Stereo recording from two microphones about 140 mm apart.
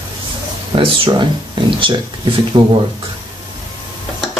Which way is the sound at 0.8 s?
35° right (ahead or behind).